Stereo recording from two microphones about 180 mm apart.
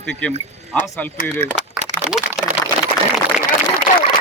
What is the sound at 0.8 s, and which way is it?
Speech, 15° left (ahead or behind).